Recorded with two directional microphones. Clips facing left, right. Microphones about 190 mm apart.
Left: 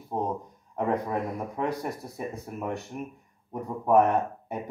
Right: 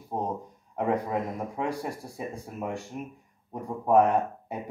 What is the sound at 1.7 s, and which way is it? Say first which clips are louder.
Speech: left 1 dB; 30° right (ahead or behind).